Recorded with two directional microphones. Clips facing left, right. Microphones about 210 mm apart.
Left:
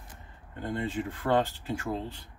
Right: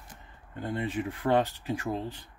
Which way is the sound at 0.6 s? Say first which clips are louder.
Even; 15° right (ahead or behind).